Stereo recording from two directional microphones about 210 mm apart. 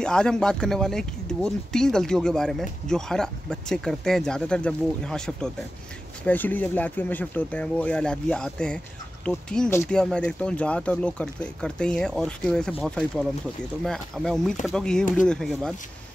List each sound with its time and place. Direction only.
0.0 s speech: 5° left (ahead or behind)